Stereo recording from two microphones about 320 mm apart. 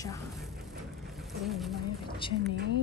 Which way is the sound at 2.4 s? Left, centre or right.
Right.